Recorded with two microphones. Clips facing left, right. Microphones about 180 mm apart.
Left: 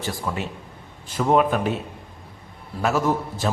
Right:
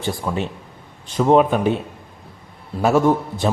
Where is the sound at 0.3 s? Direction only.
25° right (ahead or behind).